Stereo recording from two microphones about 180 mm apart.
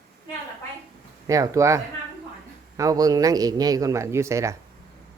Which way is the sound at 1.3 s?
20° right (ahead or behind).